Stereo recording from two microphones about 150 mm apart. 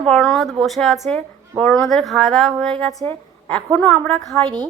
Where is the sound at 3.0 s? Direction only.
10° left (ahead or behind).